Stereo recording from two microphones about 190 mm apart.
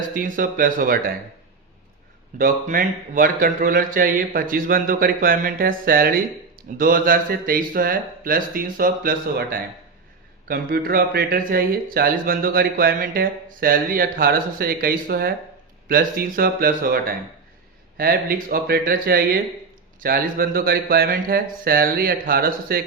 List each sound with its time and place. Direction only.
0.1 s speech: 45° right (ahead or behind)
2.4 s speech: 45° right (ahead or behind)